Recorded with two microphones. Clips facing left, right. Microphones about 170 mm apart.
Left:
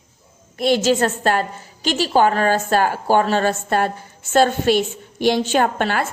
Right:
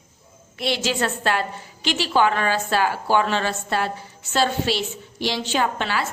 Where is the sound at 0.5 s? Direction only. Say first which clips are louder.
Left 7 dB; 45° left (ahead or behind).